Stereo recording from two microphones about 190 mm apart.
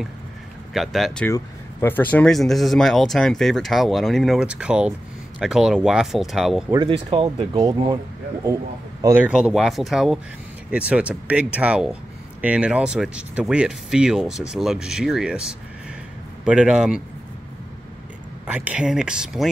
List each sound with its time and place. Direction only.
0.7 s speech: centre (ahead or behind)
6.7 s speech: 25° right (ahead or behind)
9.2 s speech: 5° right (ahead or behind)
18.5 s speech: 5° right (ahead or behind)